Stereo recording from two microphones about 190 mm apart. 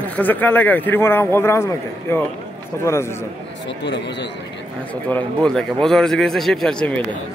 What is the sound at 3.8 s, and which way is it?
Speech, 65° left (ahead or behind).